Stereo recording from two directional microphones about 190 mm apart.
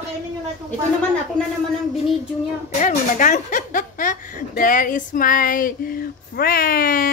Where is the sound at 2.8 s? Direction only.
40° left (ahead or behind).